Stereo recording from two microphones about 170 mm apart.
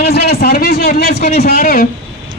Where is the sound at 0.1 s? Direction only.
65° left (ahead or behind).